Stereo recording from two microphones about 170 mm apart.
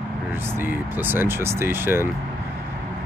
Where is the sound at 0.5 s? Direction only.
10° right (ahead or behind).